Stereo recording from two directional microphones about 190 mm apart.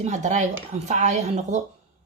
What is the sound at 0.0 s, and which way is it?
A woman's voice, 40° right (ahead or behind).